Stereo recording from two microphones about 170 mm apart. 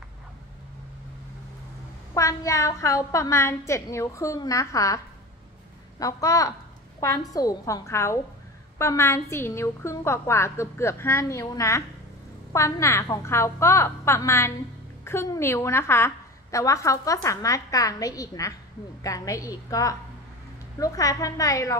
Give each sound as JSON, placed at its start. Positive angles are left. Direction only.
{"t": 2.1, "sound": "a woman's voice", "side_deg": 20}